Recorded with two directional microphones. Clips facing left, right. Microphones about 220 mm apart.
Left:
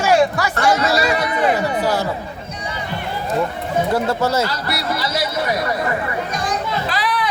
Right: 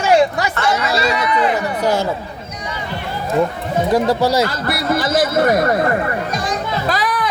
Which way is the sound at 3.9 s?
15° right (ahead or behind).